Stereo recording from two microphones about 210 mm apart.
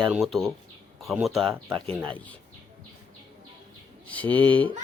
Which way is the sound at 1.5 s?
20° right (ahead or behind).